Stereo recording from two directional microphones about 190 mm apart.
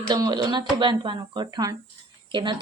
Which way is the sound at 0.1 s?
20° right (ahead or behind).